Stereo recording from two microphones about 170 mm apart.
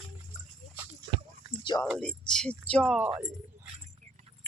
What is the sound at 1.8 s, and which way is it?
Speech, 5° left (ahead or behind).